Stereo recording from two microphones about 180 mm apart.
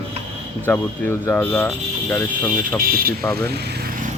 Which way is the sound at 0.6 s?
10° left (ahead or behind).